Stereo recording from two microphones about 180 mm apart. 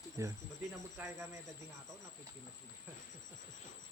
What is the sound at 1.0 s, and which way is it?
Speech, 15° right (ahead or behind).